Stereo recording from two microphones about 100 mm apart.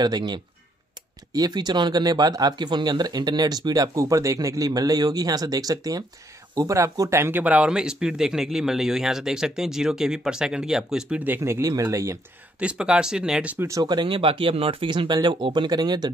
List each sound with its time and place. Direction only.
0.0 s speech: 45° right (ahead or behind)
12.5 s speech: 10° right (ahead or behind)
13.6 s speech: 30° right (ahead or behind)
13.8 s speech: 50° right (ahead or behind)